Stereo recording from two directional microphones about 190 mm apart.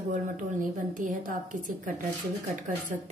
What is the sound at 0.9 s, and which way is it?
Speech, 45° right (ahead or behind).